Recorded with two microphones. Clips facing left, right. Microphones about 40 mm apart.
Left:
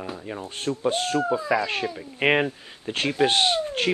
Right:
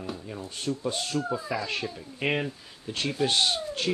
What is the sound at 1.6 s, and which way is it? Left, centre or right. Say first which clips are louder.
Speech: left 5 dB; left.